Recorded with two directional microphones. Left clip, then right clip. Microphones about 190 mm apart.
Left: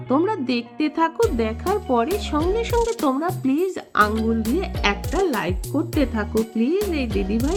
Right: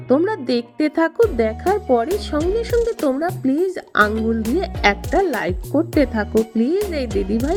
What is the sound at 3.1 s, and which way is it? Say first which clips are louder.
Speech: right 2 dB; 15° right (ahead or behind).